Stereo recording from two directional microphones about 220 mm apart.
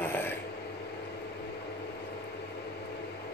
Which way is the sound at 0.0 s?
10° left (ahead or behind).